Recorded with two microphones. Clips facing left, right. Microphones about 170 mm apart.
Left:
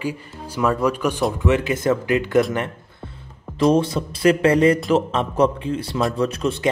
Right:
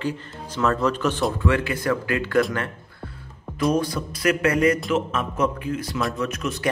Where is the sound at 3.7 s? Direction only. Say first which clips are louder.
Left 4 dB; 25° left (ahead or behind).